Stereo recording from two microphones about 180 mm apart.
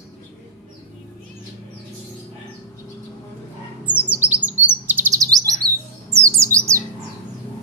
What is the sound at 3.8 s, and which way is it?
Bird, 10° right (ahead or behind).